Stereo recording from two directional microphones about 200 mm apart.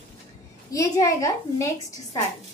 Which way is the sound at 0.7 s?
15° left (ahead or behind).